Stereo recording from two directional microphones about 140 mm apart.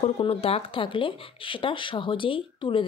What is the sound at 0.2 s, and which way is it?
Speech, 45° left (ahead or behind).